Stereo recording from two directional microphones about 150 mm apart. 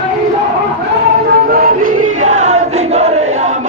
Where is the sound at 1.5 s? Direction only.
75° right (ahead or behind).